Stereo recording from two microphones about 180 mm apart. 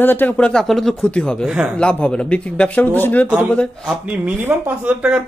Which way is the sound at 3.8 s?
5° right (ahead or behind).